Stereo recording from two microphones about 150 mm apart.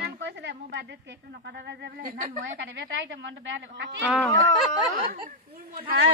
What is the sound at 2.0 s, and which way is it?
Speech, 65° right (ahead or behind).